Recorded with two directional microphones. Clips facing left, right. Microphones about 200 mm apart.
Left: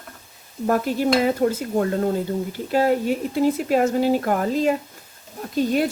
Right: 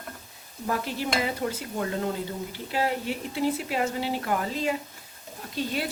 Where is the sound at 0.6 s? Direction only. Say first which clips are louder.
Left 9 dB; 45° left (ahead or behind).